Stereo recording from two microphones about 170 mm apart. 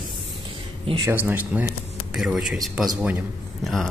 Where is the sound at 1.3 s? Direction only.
10° right (ahead or behind).